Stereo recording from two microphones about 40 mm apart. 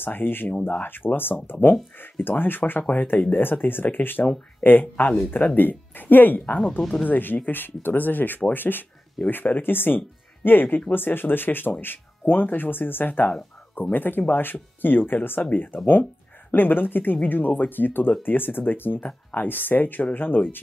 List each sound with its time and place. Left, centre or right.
0.0 s speech: left
0.5 s speech: left
0.8 s speech: left
2.9 s speech: left